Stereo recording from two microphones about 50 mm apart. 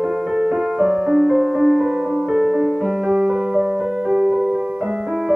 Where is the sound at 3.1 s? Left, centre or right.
Centre.